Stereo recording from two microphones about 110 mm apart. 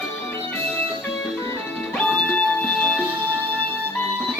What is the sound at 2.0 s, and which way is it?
Music, 10° left (ahead or behind).